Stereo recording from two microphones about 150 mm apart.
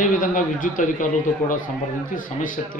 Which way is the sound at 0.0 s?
65° left (ahead or behind).